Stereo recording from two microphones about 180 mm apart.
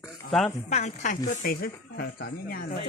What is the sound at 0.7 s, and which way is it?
Speech, 40° left (ahead or behind).